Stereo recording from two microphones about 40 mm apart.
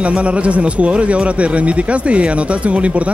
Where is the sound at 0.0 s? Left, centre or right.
Right.